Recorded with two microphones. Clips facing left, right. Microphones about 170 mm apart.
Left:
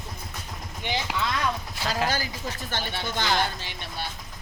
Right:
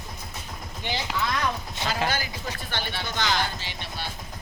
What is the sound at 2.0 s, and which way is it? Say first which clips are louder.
Speech: even; 40° left (ahead or behind).